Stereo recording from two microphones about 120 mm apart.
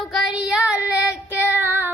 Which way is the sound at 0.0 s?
Centre (ahead or behind).